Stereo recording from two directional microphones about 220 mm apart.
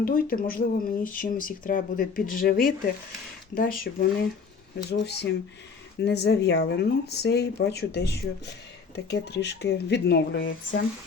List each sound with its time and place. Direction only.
0.0 s speech: 40° left (ahead or behind)